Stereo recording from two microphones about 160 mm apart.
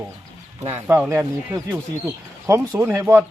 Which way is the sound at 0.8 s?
10° right (ahead or behind).